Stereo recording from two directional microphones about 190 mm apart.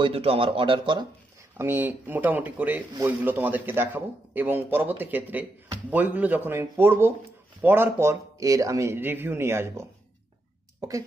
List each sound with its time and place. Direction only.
0.0 s speech: 30° right (ahead or behind)
1.6 s speech: 10° right (ahead or behind)